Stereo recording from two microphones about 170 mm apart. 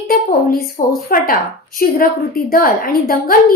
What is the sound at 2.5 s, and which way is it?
Speech, 55° left (ahead or behind).